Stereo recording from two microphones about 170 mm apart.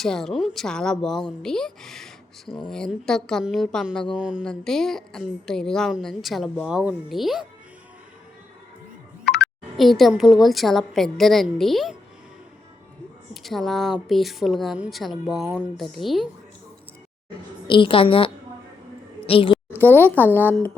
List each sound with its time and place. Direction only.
0.0 s a woman's voice: centre (ahead or behind)
9.3 s a woman's voice: centre (ahead or behind)
13.3 s a woman's voice: centre (ahead or behind)
17.7 s a woman's voice: 30° left (ahead or behind)
19.3 s a woman's voice: 30° left (ahead or behind)
20.2 s speech: 10° right (ahead or behind)